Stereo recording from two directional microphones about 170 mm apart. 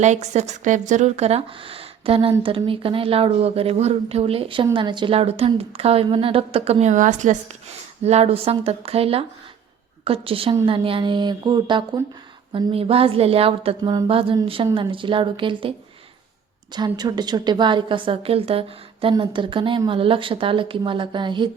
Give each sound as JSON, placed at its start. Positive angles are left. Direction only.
{"t": 0.0, "sound": "speech", "side_deg": -45}
{"t": 16.7, "sound": "speech", "side_deg": -25}